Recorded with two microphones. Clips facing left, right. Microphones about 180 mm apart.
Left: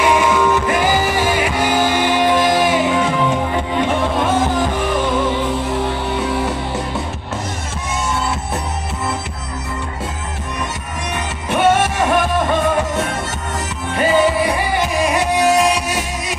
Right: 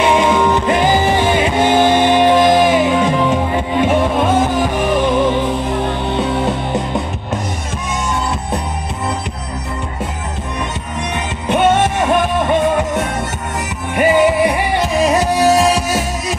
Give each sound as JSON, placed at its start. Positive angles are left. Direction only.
{"t": 0.0, "sound": "music", "side_deg": -20}
{"t": 11.4, "sound": "music", "side_deg": -20}